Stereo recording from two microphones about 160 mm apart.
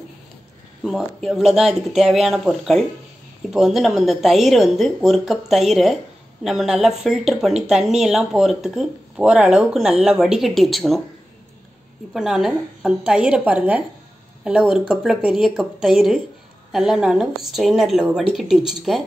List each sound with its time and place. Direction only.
0.8 s a woman's voice: centre (ahead or behind)
12.1 s a woman's voice: 5° right (ahead or behind)